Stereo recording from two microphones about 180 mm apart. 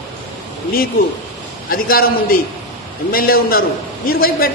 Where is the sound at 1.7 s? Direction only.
55° left (ahead or behind).